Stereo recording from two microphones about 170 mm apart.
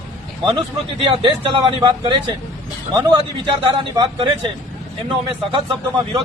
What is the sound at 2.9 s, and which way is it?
A man's voice, 25° right (ahead or behind).